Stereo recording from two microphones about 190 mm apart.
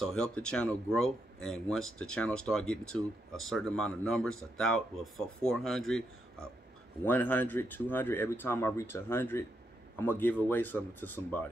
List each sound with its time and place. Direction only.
0.0 s speech: 5° left (ahead or behind)